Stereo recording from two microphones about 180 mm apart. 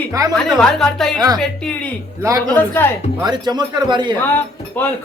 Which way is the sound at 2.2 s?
15° right (ahead or behind).